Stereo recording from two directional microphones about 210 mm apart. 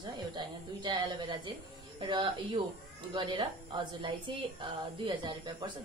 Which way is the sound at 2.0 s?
25° right (ahead or behind).